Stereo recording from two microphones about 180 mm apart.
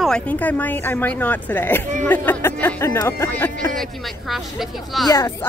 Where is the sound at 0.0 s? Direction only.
5° left (ahead or behind).